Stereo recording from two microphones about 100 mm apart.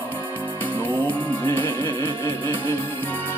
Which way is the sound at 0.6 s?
20° left (ahead or behind).